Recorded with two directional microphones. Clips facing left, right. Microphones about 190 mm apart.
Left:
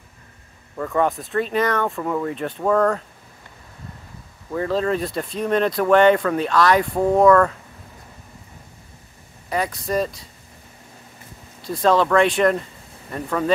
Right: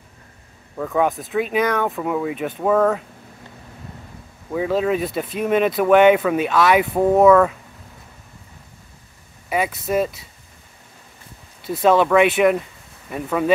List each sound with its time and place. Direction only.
0.7 s speech: 5° right (ahead or behind)
4.5 s speech: 5° right (ahead or behind)
9.5 s speech: 5° right (ahead or behind)
11.6 s speech: 5° right (ahead or behind)